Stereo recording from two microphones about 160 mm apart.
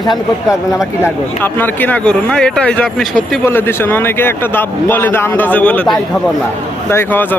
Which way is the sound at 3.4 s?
15° left (ahead or behind).